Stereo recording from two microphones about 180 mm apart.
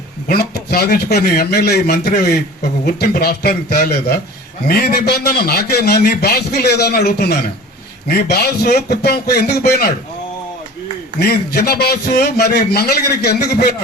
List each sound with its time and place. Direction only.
0.3 s a man's voice: 60° left (ahead or behind)
11.2 s a man's voice: 60° left (ahead or behind)